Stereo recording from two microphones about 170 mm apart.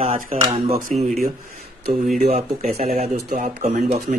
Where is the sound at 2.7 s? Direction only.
40° right (ahead or behind).